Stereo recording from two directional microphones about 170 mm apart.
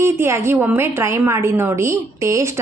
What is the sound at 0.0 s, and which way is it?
A woman's voice, 15° right (ahead or behind).